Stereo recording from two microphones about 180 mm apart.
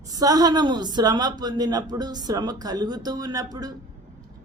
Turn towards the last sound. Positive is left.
turn(degrees=-20)  # may be behind; listen again after turning